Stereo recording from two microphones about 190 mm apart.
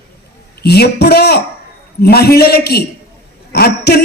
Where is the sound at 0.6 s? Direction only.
60° left (ahead or behind).